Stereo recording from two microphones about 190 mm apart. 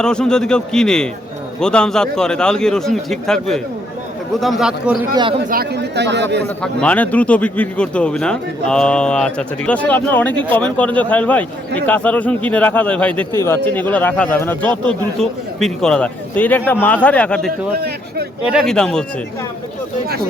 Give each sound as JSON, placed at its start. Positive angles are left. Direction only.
{"t": 0.0, "sound": "a man's voice", "side_deg": 5}
{"t": 5.1, "sound": "a man's voice", "side_deg": -25}
{"t": 5.5, "sound": "speech", "side_deg": -55}
{"t": 6.6, "sound": "speech", "side_deg": 5}
{"t": 17.7, "sound": "speech", "side_deg": -55}
{"t": 18.5, "sound": "a man's voice", "side_deg": 5}